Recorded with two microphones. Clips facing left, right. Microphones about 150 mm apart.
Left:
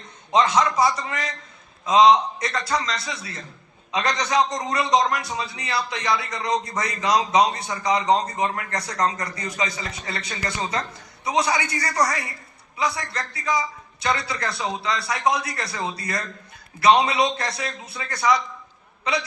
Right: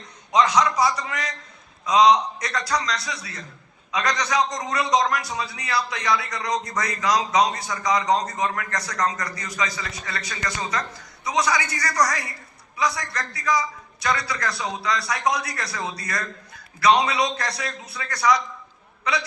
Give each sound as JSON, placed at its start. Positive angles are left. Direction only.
{"t": 0.4, "sound": "a man's voice", "side_deg": 0}
{"t": 3.9, "sound": "a man's voice", "side_deg": 25}
{"t": 4.4, "sound": "a man's voice", "side_deg": 0}
{"t": 6.7, "sound": "a man's voice", "side_deg": 25}
{"t": 12.0, "sound": "a man's voice", "side_deg": 0}
{"t": 12.7, "sound": "a man's voice", "side_deg": 25}
{"t": 14.5, "sound": "a man's voice", "side_deg": 0}
{"t": 16.0, "sound": "a man's voice", "side_deg": 25}
{"t": 17.4, "sound": "a man's voice", "side_deg": 0}
{"t": 19.1, "sound": "a man's voice", "side_deg": 25}